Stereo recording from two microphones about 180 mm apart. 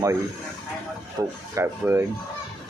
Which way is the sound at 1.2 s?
15° right (ahead or behind).